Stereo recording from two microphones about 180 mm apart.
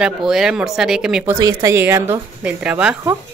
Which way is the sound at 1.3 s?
20° right (ahead or behind).